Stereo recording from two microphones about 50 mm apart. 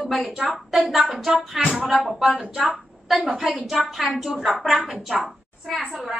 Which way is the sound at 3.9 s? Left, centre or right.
Centre.